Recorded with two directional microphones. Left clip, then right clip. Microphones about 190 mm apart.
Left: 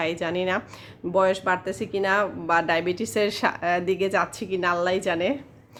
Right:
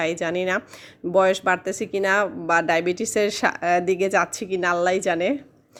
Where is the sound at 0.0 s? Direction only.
25° right (ahead or behind).